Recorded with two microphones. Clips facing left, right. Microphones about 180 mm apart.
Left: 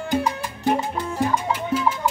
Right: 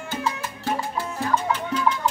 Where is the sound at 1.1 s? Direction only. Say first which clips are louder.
Left 1 dB; 10° left (ahead or behind).